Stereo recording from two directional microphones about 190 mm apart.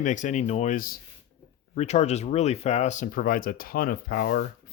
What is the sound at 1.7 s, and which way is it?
Speech, 35° left (ahead or behind).